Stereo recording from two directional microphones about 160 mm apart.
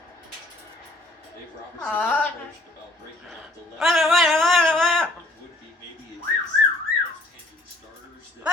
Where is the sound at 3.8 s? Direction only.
Centre (ahead or behind).